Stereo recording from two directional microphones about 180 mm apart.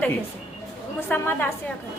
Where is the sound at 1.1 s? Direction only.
10° left (ahead or behind).